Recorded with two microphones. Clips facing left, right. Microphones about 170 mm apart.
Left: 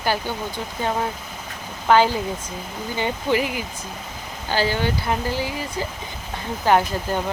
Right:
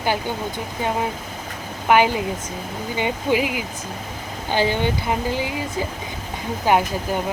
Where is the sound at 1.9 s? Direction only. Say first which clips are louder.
Even; 15° right (ahead or behind).